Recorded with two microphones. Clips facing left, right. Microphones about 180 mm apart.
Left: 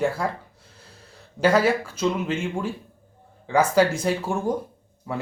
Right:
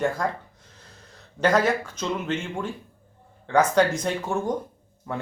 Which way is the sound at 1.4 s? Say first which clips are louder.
Left 2 dB; 10° left (ahead or behind).